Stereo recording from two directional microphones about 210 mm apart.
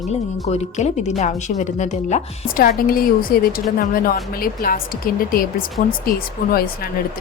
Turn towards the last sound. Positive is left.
turn(degrees=45)  # may be behind; listen again after turning